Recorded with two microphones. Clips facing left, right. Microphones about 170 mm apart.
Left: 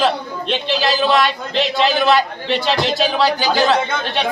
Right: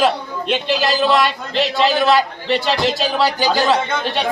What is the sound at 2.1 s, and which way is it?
Speech, 40° right (ahead or behind).